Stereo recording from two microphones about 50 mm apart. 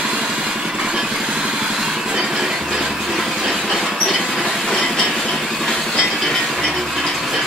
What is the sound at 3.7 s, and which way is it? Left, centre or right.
Train, centre.